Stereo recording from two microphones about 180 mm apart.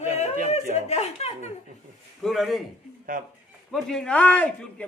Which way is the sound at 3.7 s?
5° left (ahead or behind).